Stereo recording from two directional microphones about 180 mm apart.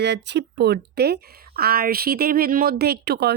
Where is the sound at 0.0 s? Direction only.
75° right (ahead or behind).